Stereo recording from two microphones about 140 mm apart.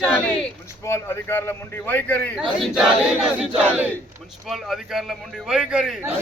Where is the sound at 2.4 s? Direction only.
Centre (ahead or behind).